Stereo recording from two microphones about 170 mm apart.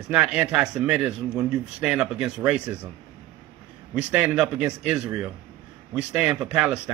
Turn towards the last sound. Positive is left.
turn(degrees=-5)  # may be behind; listen again after turning